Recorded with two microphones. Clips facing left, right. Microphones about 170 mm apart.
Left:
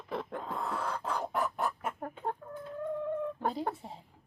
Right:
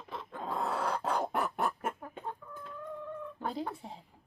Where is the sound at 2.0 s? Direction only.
55° left (ahead or behind).